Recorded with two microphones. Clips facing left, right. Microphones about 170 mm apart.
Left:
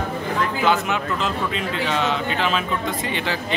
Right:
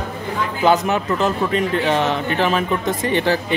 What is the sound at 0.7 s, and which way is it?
Speech, 40° right (ahead or behind).